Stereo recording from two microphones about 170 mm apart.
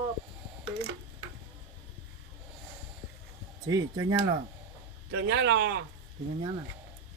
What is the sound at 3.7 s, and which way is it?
Speech, 20° right (ahead or behind).